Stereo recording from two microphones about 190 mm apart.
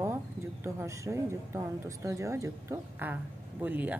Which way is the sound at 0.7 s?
15° right (ahead or behind).